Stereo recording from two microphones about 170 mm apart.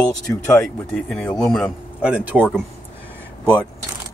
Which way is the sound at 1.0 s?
5° left (ahead or behind).